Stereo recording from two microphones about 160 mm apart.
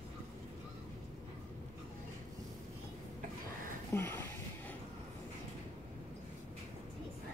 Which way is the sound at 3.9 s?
15° left (ahead or behind).